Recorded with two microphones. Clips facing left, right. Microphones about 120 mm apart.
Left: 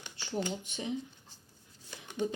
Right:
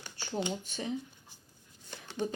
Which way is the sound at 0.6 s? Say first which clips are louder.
Right 1 dB; 20° left (ahead or behind).